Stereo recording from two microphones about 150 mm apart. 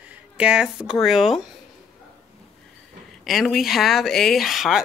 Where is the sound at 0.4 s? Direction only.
5° right (ahead or behind).